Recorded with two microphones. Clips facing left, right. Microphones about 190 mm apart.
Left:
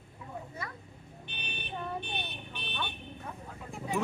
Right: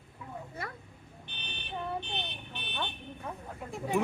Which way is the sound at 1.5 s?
15° left (ahead or behind).